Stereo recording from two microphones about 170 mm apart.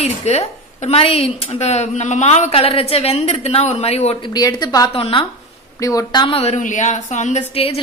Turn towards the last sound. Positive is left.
turn(degrees=40)  # may be behind; listen again after turning